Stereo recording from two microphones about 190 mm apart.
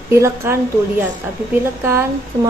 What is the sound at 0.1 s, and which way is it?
A woman's voice, 15° right (ahead or behind).